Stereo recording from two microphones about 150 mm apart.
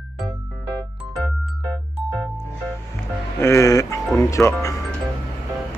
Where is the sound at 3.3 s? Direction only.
20° left (ahead or behind).